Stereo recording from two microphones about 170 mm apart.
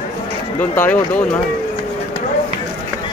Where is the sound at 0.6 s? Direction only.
10° left (ahead or behind).